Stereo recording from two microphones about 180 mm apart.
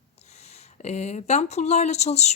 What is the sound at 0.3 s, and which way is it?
Speech, 35° left (ahead or behind).